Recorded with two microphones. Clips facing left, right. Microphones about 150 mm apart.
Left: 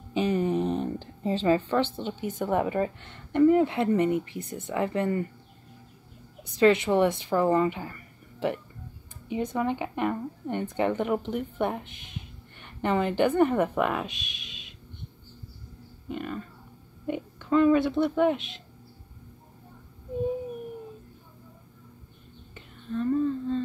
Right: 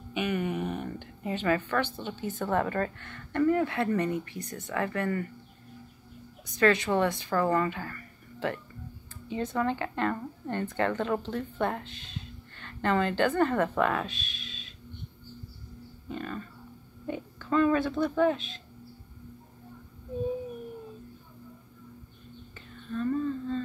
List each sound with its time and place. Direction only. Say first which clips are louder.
0.1 s a woman's voice: left 5 dB; 30° left (ahead or behind)
6.4 s a woman's voice: left 4 dB; 25° left (ahead or behind)
16.1 s a woman's voice: left 3 dB; 10° left (ahead or behind)
22.8 s humming: left 3 dB; 15° left (ahead or behind)